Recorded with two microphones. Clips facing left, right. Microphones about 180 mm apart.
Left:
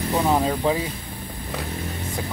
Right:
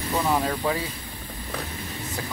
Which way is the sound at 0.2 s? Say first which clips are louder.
Left 3 dB; 20° left (ahead or behind).